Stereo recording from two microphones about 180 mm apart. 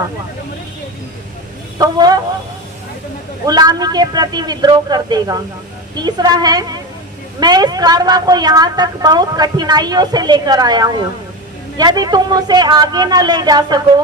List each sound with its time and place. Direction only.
1.8 s a woman's voice: 20° right (ahead or behind)
3.4 s a woman's voice: 20° right (ahead or behind)